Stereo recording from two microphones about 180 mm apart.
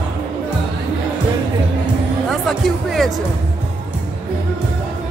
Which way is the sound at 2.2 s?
Centre (ahead or behind).